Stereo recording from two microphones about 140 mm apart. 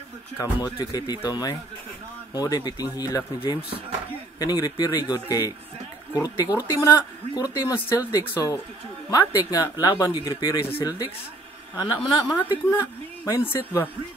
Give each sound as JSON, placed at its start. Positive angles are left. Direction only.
{"t": 0.4, "sound": "speech", "side_deg": 30}
{"t": 4.4, "sound": "speech", "side_deg": 30}
{"t": 12.6, "sound": "speech", "side_deg": 20}